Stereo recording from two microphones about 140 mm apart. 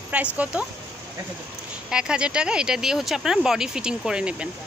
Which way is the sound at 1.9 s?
5° right (ahead or behind).